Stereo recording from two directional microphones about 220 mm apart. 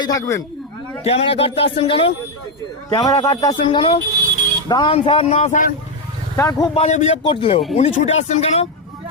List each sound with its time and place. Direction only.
0.0 s speech: 15° left (ahead or behind)
1.0 s a man's voice: 25° left (ahead or behind)
6.3 s speech: 15° left (ahead or behind)
6.8 s a man's voice: 30° left (ahead or behind)